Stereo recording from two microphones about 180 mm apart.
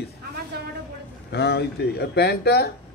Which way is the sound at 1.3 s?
70° left (ahead or behind).